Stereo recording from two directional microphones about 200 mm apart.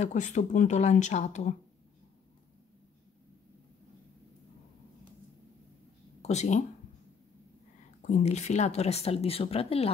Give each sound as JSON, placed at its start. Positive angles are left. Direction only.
{"t": 0.0, "sound": "speech", "side_deg": 35}
{"t": 6.2, "sound": "speech", "side_deg": 35}
{"t": 8.0, "sound": "speech", "side_deg": 35}